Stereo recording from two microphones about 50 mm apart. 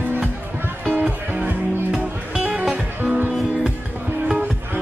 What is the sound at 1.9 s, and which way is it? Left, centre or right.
Music, centre.